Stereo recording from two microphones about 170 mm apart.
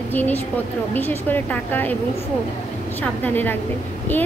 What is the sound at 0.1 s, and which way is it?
A woman's voice, 10° left (ahead or behind).